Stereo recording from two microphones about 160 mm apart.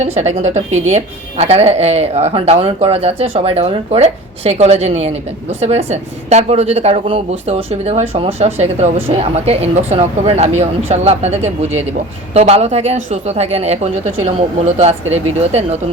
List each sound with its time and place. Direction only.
0.0 s a woman's voice: 45° right (ahead or behind)